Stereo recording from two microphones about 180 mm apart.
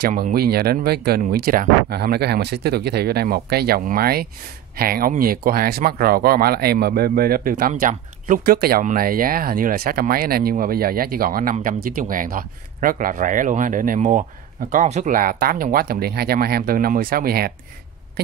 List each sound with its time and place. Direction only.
0.0 s speech: 55° right (ahead or behind)